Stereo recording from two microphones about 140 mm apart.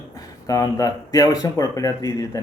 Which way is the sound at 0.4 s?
25° left (ahead or behind).